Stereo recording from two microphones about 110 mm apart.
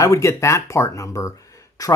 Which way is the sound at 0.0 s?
25° left (ahead or behind).